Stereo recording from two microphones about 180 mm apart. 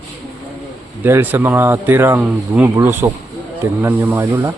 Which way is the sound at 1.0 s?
10° right (ahead or behind).